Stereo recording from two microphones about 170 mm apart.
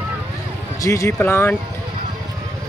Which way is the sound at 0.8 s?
20° left (ahead or behind).